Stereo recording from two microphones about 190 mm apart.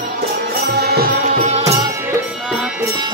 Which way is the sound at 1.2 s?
35° right (ahead or behind).